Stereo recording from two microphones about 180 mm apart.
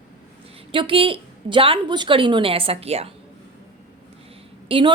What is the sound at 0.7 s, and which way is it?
A woman's voice, 30° right (ahead or behind).